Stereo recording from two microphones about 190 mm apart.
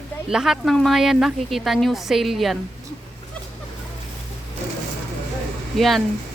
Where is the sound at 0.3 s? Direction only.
Centre (ahead or behind).